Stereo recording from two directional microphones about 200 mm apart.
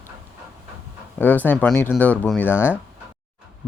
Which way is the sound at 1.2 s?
10° left (ahead or behind).